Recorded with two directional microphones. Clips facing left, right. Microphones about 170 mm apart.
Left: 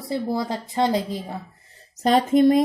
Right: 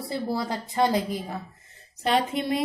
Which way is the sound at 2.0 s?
45° left (ahead or behind).